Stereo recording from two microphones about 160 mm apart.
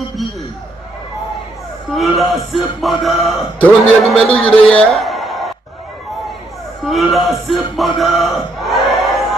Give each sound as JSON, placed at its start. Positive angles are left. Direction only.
{"t": 2.0, "sound": "a man's voice", "side_deg": 0}
{"t": 6.9, "sound": "a man's voice", "side_deg": 0}
{"t": 8.0, "sound": "crowd", "side_deg": 0}